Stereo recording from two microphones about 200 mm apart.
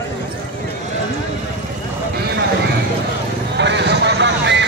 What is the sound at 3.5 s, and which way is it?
Music, 60° right (ahead or behind).